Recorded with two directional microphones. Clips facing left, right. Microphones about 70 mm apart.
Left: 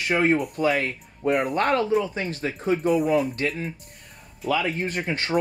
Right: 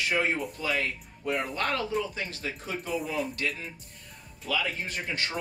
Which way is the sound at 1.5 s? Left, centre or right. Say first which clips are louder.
Left 8 dB; left.